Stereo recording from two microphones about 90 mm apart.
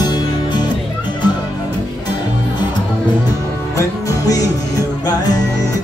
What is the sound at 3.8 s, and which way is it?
Music, 40° left (ahead or behind).